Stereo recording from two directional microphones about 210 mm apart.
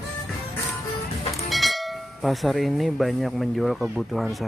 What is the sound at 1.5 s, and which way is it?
Speech, centre (ahead or behind).